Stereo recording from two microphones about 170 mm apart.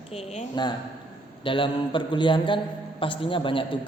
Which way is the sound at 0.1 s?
40° left (ahead or behind).